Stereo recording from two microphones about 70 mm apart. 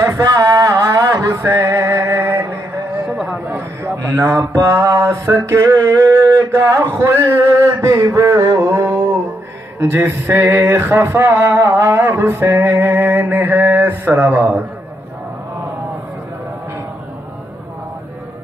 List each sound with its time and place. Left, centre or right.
0.0 s singing: right
0.7 s music: right
3.1 s a sound: centre
3.4 s a sound: right
4.0 s a sound: right
6.9 s male singing: right
7.8 s a man's voice: right
8.1 s music: right
9.8 s male singing: right